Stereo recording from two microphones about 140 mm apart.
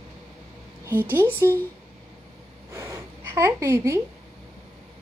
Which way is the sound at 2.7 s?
20° right (ahead or behind).